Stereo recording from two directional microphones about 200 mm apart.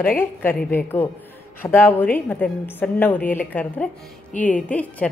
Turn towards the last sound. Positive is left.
turn(degrees=5)  # may be behind; listen again after turning